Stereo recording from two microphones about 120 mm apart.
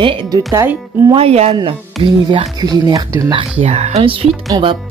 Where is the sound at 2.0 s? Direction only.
45° right (ahead or behind).